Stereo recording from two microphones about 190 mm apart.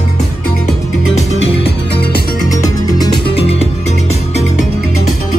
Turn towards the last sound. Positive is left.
turn(degrees=35)  # may be behind; listen again after turning